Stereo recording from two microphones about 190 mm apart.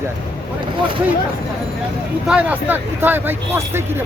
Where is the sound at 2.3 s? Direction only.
5° right (ahead or behind).